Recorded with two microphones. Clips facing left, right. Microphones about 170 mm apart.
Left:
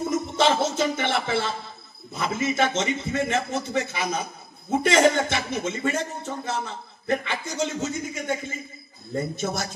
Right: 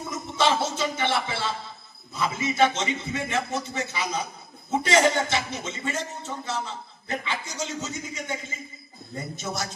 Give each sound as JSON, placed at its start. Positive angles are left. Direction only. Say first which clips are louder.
{"t": 0.1, "sound": "a man's voice", "louder": "left 1 dB", "side_deg": 50}